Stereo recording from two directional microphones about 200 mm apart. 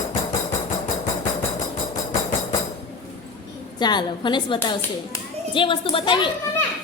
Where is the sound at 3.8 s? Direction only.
20° left (ahead or behind).